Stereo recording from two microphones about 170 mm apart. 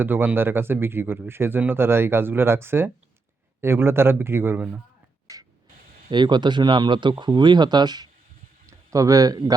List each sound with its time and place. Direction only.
0.0 s speech: 10° right (ahead or behind)
5.3 s printer: 20° right (ahead or behind)
6.1 s speech: 25° right (ahead or behind)